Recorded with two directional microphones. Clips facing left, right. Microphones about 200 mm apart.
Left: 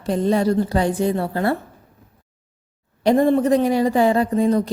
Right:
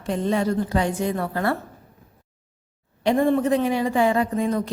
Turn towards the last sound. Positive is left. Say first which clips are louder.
# left 5 dB
turn(degrees=35)  # may be behind; listen again after turning